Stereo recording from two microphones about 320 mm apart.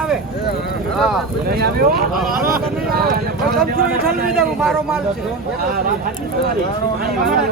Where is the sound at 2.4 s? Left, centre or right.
Right.